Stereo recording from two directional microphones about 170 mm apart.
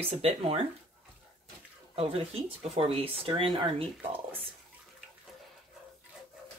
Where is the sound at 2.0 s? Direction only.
35° right (ahead or behind).